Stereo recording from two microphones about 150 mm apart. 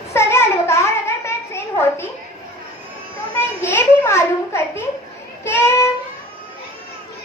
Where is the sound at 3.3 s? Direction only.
15° left (ahead or behind).